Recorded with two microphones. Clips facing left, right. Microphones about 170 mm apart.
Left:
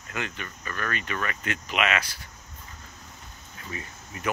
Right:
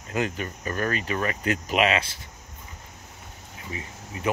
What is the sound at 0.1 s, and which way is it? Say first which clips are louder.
Speech: right 7 dB; 40° right (ahead or behind).